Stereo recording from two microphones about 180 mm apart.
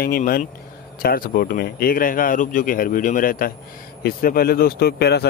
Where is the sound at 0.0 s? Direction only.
55° left (ahead or behind).